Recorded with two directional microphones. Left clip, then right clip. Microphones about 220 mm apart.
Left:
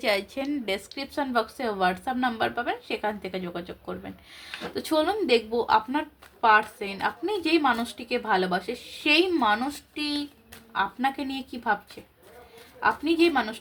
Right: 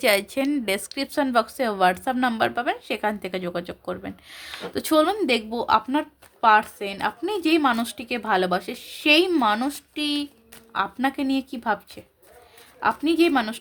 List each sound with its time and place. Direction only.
0.0 s speech: 45° right (ahead or behind)
12.8 s speech: 50° right (ahead or behind)